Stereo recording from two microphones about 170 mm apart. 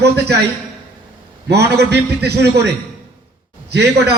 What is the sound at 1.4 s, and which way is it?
A man's voice, 75° right (ahead or behind).